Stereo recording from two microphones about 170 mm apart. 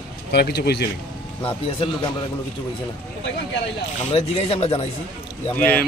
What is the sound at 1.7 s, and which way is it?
Speech, 30° left (ahead or behind).